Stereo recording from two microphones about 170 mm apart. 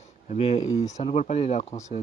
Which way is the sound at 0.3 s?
40° left (ahead or behind).